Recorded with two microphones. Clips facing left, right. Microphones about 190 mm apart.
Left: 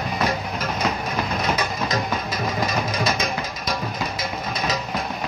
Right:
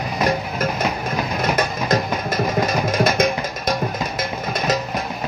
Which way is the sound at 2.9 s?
50° right (ahead or behind).